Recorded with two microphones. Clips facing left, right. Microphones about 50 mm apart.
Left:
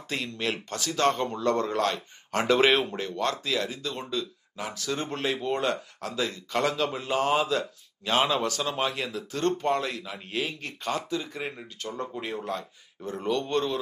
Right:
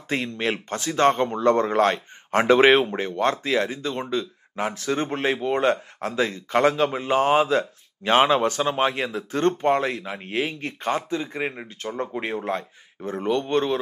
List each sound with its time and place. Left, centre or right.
0.1 s speech: right